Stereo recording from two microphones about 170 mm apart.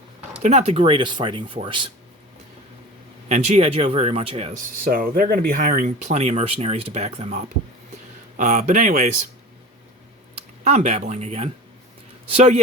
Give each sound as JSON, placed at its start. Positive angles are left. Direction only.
{"t": 0.4, "sound": "speech", "side_deg": -40}
{"t": 3.2, "sound": "speech", "side_deg": -45}
{"t": 4.5, "sound": "speech", "side_deg": -55}
{"t": 10.6, "sound": "speech", "side_deg": -40}